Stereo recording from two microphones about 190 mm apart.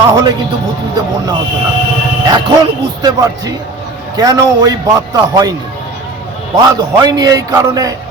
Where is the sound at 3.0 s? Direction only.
20° right (ahead or behind).